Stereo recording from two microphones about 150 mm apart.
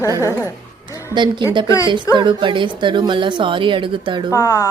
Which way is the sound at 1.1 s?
30° right (ahead or behind).